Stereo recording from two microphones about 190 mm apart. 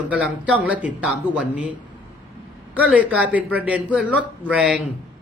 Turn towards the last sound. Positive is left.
turn(degrees=-5)  # may be behind; listen again after turning